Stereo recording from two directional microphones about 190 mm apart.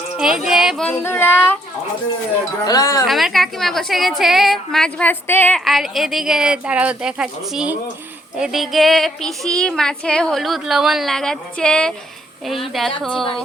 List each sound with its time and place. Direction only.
0.2 s female singing: 5° right (ahead or behind)
2.6 s speech: 20° left (ahead or behind)
3.1 s female singing: centre (ahead or behind)